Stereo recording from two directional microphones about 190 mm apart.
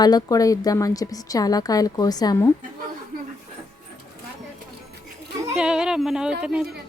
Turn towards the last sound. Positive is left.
turn(degrees=-5)  # may be behind; listen again after turning